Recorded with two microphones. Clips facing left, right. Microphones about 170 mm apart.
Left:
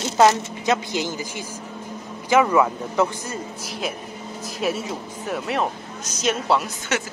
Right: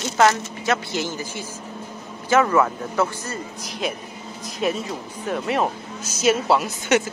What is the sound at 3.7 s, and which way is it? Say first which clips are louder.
Speech: right 3 dB; centre (ahead or behind).